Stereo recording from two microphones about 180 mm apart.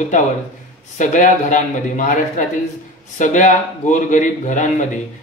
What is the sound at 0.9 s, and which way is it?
Speech, 45° left (ahead or behind).